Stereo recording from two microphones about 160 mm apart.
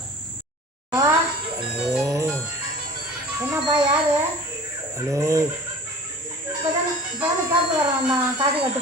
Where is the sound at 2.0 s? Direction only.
20° right (ahead or behind).